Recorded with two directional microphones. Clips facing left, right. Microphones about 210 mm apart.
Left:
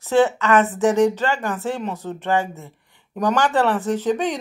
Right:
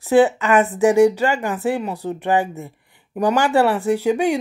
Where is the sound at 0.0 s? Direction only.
15° right (ahead or behind).